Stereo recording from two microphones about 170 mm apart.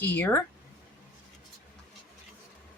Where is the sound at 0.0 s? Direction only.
10° left (ahead or behind).